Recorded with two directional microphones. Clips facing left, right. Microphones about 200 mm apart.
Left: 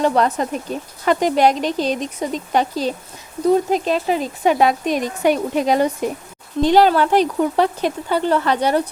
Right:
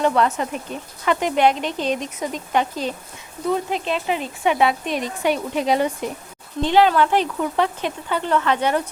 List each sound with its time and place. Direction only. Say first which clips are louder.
0.0 s speech: left 2 dB; 35° left (ahead or behind)